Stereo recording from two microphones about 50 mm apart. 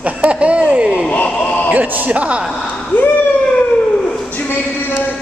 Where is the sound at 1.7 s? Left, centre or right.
Right.